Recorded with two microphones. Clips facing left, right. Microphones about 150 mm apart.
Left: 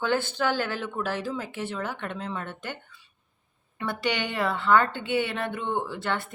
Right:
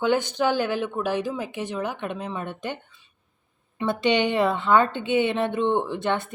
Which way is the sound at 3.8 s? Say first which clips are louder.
Right 7 dB; 20° right (ahead or behind).